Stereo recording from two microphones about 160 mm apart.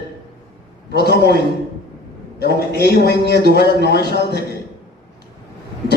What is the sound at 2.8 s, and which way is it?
Speech, 85° left.